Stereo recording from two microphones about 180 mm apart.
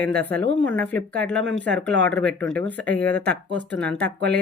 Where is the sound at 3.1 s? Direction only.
65° right (ahead or behind).